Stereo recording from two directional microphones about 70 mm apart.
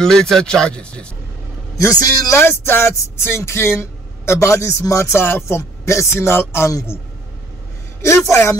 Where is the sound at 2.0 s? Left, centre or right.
Left.